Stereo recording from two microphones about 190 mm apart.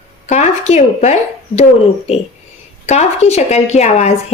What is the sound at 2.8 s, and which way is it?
A woman's voice, 35° left (ahead or behind).